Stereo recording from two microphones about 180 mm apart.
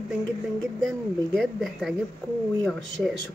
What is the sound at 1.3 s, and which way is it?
Speech, centre (ahead or behind).